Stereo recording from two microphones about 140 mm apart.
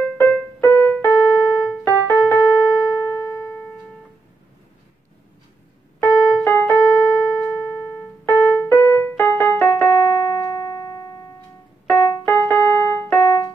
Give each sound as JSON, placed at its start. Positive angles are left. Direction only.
{"t": 0.0, "sound": "keyboard", "side_deg": 15}
{"t": 5.9, "sound": "keyboard", "side_deg": 20}
{"t": 11.9, "sound": "keyboard", "side_deg": 15}